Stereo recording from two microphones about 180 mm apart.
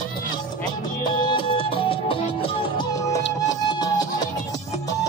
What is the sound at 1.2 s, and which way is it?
Music, 30° left (ahead or behind).